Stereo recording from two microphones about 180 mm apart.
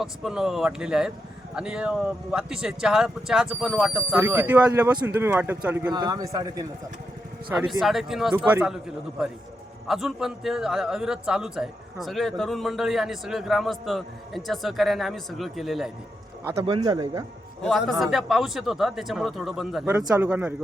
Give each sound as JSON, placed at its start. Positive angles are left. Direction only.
{"t": 0.0, "sound": "a man's voice", "side_deg": 0}
{"t": 5.9, "sound": "speech", "side_deg": -20}
{"t": 7.8, "sound": "a man's voice", "side_deg": 0}
{"t": 16.6, "sound": "speech", "side_deg": -25}
{"t": 17.6, "sound": "a man's voice", "side_deg": 0}
{"t": 19.9, "sound": "speech", "side_deg": -15}